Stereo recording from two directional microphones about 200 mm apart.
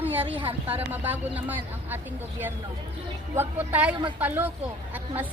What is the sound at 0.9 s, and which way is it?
A woman's voice, 10° right (ahead or behind).